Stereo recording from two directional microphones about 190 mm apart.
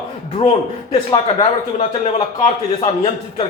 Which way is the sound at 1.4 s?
30° left (ahead or behind).